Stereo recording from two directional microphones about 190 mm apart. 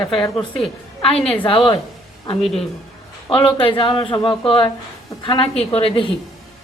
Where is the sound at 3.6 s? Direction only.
25° left (ahead or behind).